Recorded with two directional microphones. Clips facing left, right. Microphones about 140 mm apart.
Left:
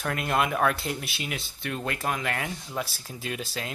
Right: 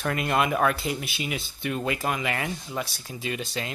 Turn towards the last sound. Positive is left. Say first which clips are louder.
# right 2 dB
turn(degrees=0)  # may be behind; listen again after turning